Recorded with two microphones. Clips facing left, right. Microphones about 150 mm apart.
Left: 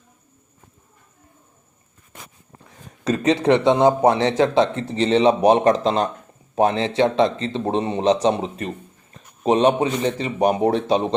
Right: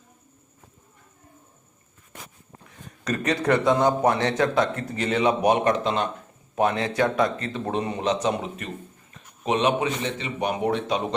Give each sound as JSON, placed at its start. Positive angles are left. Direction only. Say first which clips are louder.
{"t": 2.6, "sound": "a man's voice", "louder": "left 6 dB", "side_deg": 25}